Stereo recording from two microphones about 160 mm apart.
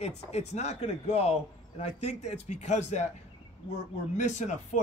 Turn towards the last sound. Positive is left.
turn(degrees=50)  # may be behind; listen again after turning